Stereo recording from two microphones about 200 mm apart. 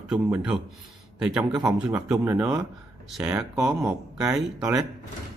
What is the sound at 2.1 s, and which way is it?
Speech, 10° right (ahead or behind).